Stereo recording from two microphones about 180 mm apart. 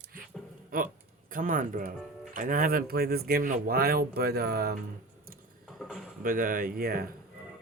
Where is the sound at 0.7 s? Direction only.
55° right (ahead or behind).